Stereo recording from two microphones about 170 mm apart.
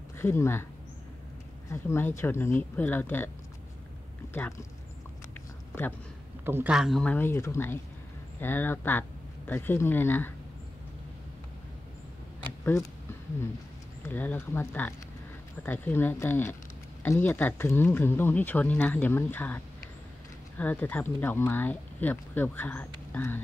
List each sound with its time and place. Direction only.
0.2 s speech: 15° left (ahead or behind)
1.7 s speech: 15° left (ahead or behind)
4.3 s speech: 15° left (ahead or behind)
6.4 s speech: 10° right (ahead or behind); by 10.3 s 10° left (ahead or behind)
14.0 s speech: 10° left (ahead or behind)